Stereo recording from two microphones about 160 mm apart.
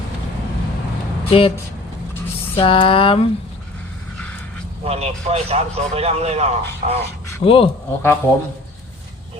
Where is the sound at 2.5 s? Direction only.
35° left (ahead or behind).